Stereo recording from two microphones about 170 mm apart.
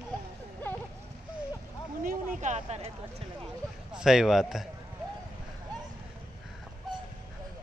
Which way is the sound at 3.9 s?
5° right (ahead or behind).